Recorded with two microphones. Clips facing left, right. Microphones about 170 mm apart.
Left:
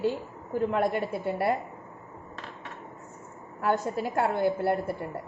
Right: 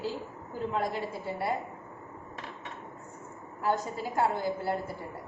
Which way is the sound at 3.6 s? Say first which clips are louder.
Left 3 dB; 65° left (ahead or behind).